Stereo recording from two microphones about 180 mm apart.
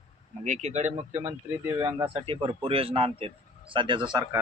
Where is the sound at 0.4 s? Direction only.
40° right (ahead or behind).